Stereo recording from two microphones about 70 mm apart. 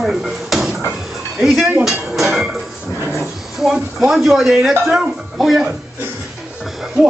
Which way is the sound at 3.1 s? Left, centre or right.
Centre.